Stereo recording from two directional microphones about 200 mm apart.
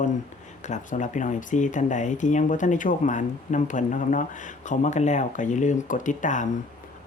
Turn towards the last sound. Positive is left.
turn(degrees=40)  # may be behind; listen again after turning